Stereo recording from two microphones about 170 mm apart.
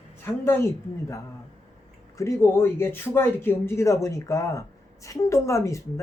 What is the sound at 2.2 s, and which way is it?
Speech, 15° left (ahead or behind).